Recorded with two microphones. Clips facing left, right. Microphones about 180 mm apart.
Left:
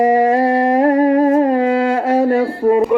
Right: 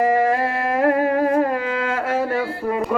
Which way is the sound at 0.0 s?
20° left (ahead or behind).